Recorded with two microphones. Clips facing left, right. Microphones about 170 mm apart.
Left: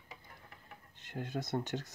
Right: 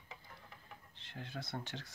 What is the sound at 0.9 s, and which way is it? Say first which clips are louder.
Speech: left 8 dB; 45° left (ahead or behind).